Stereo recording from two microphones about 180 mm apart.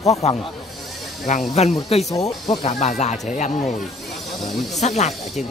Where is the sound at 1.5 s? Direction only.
35° left (ahead or behind).